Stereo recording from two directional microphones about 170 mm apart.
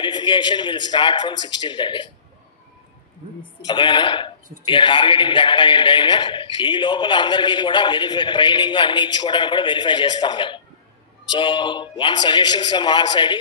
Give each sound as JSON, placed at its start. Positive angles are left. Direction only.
{"t": 0.0, "sound": "speech", "side_deg": 25}
{"t": 3.6, "sound": "speech", "side_deg": 25}